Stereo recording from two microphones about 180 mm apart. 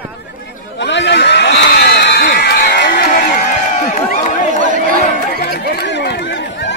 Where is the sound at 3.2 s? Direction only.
45° left (ahead or behind).